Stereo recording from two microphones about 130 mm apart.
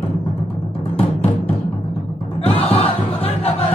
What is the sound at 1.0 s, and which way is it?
Timpani, 50° left (ahead or behind).